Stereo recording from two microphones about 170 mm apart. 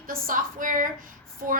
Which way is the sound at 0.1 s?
55° right (ahead or behind).